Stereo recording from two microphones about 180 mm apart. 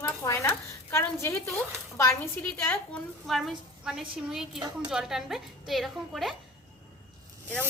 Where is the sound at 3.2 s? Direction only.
Centre (ahead or behind).